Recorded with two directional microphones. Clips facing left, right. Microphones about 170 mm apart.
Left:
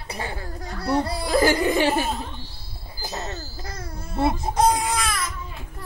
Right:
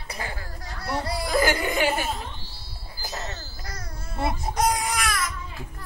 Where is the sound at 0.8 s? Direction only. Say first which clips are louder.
Left 5 dB; 25° left (ahead or behind).